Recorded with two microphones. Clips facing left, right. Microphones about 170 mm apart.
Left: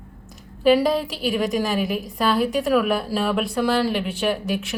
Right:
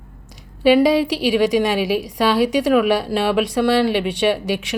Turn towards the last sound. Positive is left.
turn(degrees=-85)